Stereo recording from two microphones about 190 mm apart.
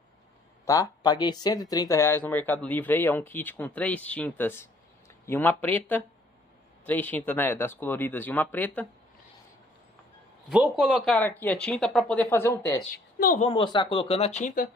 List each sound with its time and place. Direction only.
0.7 s speech: 20° left (ahead or behind)
10.5 s speech: 5° right (ahead or behind)
12.9 s a woman's voice: 45° left (ahead or behind)
13.5 s speech: 25° left (ahead or behind); by 14.7 s 45° left (ahead or behind)